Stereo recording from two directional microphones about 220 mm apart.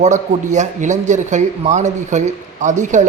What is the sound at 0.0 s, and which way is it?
Speech, 30° right (ahead or behind).